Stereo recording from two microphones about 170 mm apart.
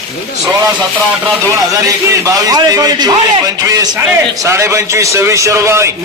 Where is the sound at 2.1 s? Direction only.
20° right (ahead or behind).